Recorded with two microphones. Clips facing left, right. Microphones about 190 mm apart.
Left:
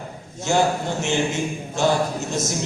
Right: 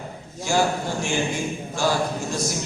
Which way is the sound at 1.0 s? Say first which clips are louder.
Left 3 dB; 20° left (ahead or behind).